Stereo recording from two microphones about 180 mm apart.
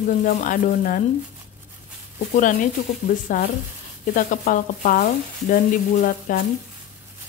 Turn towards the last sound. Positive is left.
turn(degrees=45)  # may be behind; listen again after turning